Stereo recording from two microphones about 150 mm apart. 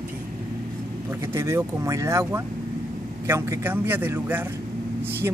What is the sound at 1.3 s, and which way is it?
Speech, 20° right (ahead or behind).